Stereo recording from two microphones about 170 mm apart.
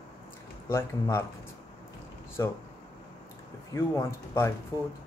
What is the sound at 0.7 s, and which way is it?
Speech, 15° left (ahead or behind).